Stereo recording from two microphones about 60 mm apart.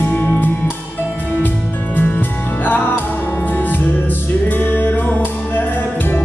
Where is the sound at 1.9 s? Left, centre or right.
Left.